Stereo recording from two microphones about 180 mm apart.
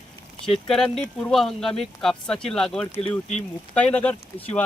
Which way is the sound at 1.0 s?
Centre (ahead or behind).